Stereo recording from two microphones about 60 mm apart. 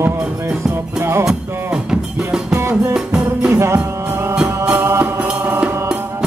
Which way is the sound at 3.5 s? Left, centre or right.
Right.